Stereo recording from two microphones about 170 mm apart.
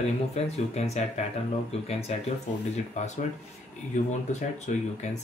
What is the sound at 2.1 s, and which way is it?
Speech, 40° left (ahead or behind).